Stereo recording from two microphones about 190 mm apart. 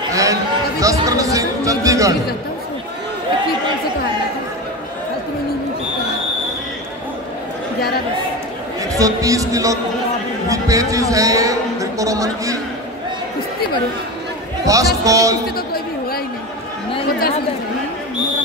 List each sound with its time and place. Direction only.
0.1 s chatter: 15° right (ahead or behind)
8.9 s a man's voice: 15° right (ahead or behind)
14.7 s speech: 15° right (ahead or behind)
15.5 s chatter: 55° left (ahead or behind)